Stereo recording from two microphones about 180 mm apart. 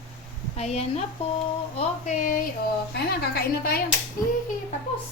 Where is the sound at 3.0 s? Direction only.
60° left (ahead or behind).